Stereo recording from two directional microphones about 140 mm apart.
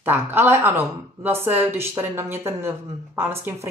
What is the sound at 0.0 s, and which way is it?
A woman's voice, 15° right (ahead or behind).